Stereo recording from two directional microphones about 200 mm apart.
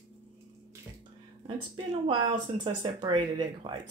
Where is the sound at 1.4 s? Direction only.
25° right (ahead or behind).